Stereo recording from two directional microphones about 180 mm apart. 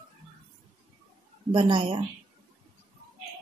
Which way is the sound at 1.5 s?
30° right (ahead or behind).